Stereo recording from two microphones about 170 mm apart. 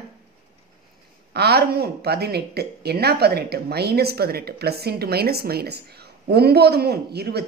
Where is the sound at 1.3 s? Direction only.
70° right (ahead or behind).